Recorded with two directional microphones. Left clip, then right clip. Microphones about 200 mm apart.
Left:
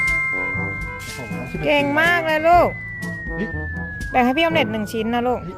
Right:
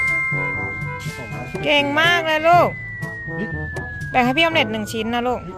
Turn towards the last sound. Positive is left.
turn(degrees=5)  # may be behind; listen again after turning